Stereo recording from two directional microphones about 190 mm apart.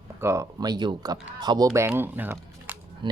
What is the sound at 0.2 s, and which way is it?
Speech, 15° right (ahead or behind).